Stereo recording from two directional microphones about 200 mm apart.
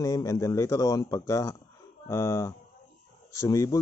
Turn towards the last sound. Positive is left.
turn(degrees=15)  # may be behind; listen again after turning